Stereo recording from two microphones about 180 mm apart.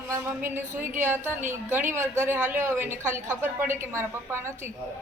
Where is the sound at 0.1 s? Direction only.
10° right (ahead or behind).